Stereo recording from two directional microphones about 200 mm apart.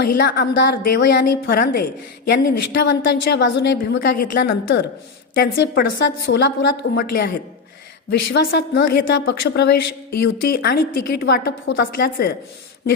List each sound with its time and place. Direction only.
0.0 s a woman's voice: 50° left (ahead or behind)
8.3 s a woman's voice: 60° left (ahead or behind)